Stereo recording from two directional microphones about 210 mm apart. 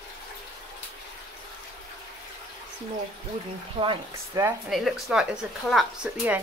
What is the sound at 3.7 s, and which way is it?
Speech, 20° right (ahead or behind).